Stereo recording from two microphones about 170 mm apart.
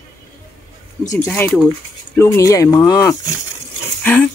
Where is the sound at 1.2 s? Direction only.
10° left (ahead or behind).